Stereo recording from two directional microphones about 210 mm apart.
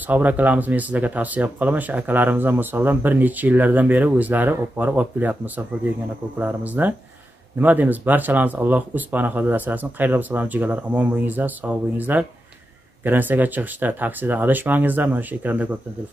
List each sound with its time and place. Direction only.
0.0 s speech: 10° right (ahead or behind)